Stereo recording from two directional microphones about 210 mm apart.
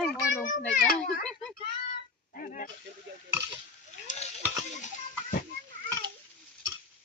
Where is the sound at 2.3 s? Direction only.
40° left (ahead or behind).